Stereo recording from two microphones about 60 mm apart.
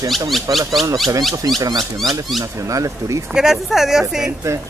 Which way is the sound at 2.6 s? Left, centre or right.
Right.